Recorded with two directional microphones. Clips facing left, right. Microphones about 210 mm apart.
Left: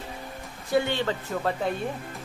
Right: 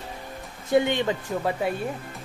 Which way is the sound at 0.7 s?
20° right (ahead or behind).